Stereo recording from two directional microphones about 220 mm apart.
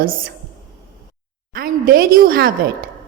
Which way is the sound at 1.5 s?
40° right (ahead or behind).